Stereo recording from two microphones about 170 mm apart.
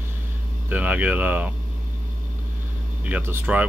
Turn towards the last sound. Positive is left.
turn(degrees=-10)  # may be behind; listen again after turning